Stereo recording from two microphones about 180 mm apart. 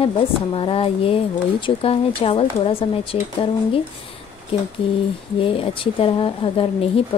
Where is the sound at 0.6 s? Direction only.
30° left (ahead or behind).